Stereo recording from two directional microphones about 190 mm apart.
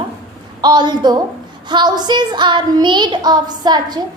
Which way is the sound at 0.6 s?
20° right (ahead or behind).